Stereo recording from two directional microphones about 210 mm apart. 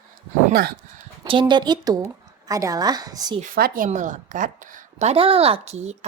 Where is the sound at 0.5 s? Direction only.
45° right (ahead or behind).